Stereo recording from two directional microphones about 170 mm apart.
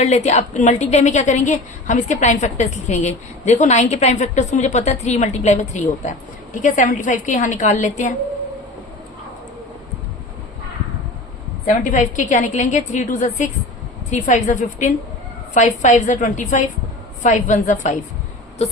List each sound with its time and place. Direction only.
0.0 s a woman's voice: 40° left (ahead or behind)
11.6 s a woman's voice: 50° left (ahead or behind)